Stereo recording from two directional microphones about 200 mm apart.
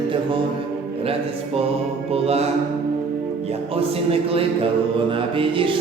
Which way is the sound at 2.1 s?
30° right (ahead or behind).